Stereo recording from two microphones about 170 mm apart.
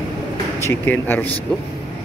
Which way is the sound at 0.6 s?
10° left (ahead or behind).